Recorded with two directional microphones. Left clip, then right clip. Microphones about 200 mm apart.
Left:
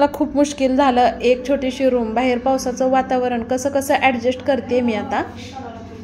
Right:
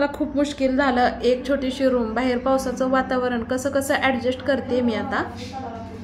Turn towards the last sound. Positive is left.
turn(degrees=15)  # may be behind; listen again after turning